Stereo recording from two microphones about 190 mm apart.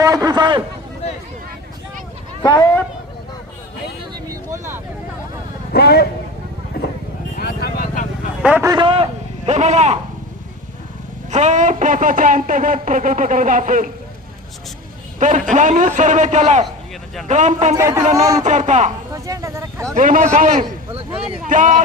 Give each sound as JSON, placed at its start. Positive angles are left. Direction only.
{"t": 0.0, "sound": "a sound", "side_deg": -20}
{"t": 2.4, "sound": "speech", "side_deg": 20}
{"t": 4.3, "sound": "a sound", "side_deg": -15}
{"t": 5.7, "sound": "a man's voice", "side_deg": 55}
{"t": 7.3, "sound": "vehicle", "side_deg": 55}
{"t": 8.4, "sound": "a man's voice", "side_deg": -5}
{"t": 8.6, "sound": "a man's voice", "side_deg": -25}
{"t": 9.5, "sound": "a man's voice", "side_deg": -40}
{"t": 11.3, "sound": "speech", "side_deg": -40}
{"t": 15.2, "sound": "a man's voice", "side_deg": -40}
{"t": 17.7, "sound": "speech", "side_deg": -15}
{"t": 18.4, "sound": "a man's voice", "side_deg": -40}
{"t": 19.1, "sound": "a sound", "side_deg": -15}
{"t": 20.0, "sound": "speech", "side_deg": -45}